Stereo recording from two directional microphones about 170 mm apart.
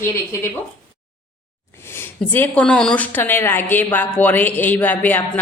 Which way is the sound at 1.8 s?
15° left (ahead or behind).